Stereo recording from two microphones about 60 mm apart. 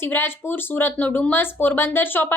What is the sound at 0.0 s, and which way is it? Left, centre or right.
A woman's voice, left.